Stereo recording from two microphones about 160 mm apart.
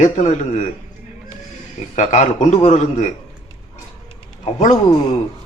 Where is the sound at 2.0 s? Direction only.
50° left (ahead or behind).